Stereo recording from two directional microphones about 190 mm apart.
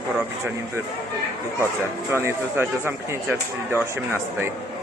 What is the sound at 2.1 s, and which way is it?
Speech, 15° right (ahead or behind).